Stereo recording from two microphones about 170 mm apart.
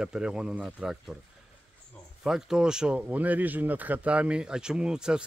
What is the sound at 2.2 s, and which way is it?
Speech, 5° right (ahead or behind).